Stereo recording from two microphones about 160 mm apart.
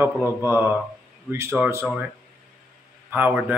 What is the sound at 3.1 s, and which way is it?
Speech, 10° right (ahead or behind).